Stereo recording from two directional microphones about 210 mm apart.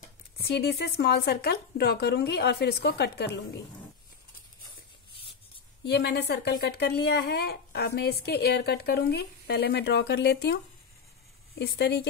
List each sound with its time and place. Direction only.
0.4 s speech: 50° left (ahead or behind)
5.9 s speech: 50° left (ahead or behind)